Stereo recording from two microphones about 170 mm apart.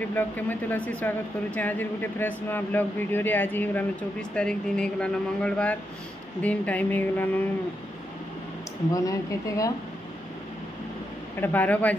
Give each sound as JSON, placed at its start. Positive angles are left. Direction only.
{"t": 0.0, "sound": "speech", "side_deg": 10}
{"t": 8.9, "sound": "speech", "side_deg": 20}
{"t": 11.3, "sound": "speech", "side_deg": 10}